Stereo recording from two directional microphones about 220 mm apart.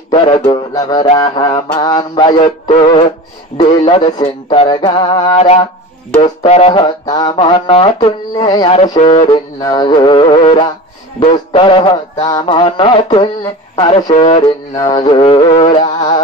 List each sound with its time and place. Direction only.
0.1 s speech: 20° left (ahead or behind)